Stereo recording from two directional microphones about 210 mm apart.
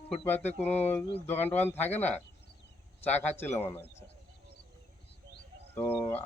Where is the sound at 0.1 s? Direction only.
10° left (ahead or behind).